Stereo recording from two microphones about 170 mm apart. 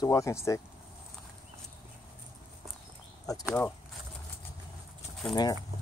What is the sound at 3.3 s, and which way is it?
Speech, 20° left (ahead or behind).